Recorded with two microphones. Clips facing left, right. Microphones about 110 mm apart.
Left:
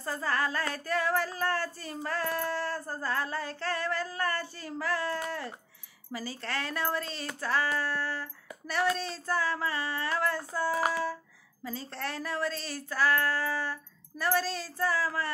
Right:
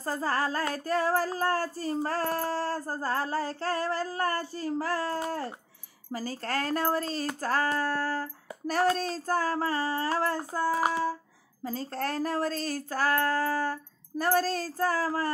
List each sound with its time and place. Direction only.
0.0 s child singing: 40° right (ahead or behind)
6.1 s speech: 45° right (ahead or behind)
8.6 s child singing: 40° right (ahead or behind)
11.6 s speech: 45° right (ahead or behind)